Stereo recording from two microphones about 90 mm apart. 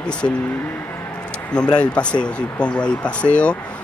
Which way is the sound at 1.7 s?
10° left (ahead or behind).